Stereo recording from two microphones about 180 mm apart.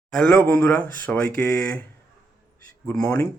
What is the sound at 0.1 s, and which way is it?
Speech, 5° left (ahead or behind).